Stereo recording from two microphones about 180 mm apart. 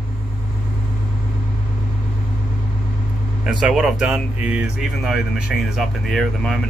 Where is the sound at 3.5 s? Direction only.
5° right (ahead or behind).